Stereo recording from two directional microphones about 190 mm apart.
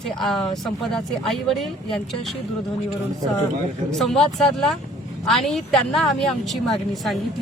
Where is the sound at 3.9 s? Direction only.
Centre (ahead or behind).